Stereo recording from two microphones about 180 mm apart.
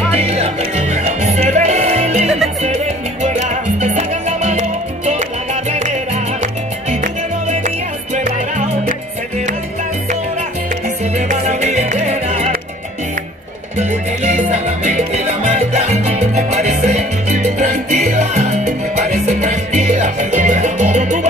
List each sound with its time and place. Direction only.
0.1 s music: 35° right (ahead or behind)
2.2 s music: centre (ahead or behind)
2.6 s salsa music: 40° right (ahead or behind)
6.4 s music: 40° right (ahead or behind)
11.1 s music: 40° right (ahead or behind)
13.7 s music: 40° right (ahead or behind)